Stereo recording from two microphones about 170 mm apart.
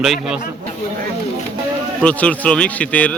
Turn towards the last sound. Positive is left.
turn(degrees=10)  # may be behind; listen again after turning